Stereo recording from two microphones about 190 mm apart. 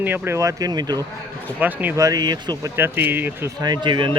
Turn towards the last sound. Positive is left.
turn(degrees=-25)  # may be behind; listen again after turning